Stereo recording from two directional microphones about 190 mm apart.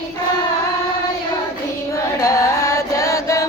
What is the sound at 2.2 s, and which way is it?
Music, 15° left (ahead or behind).